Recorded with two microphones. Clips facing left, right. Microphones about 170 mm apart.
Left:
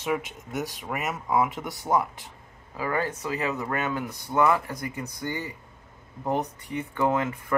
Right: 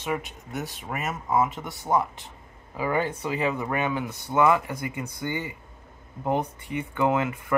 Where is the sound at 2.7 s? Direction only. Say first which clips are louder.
Right 2 dB; 20° right (ahead or behind).